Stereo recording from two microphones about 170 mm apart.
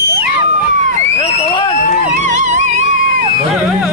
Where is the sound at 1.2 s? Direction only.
35° left (ahead or behind).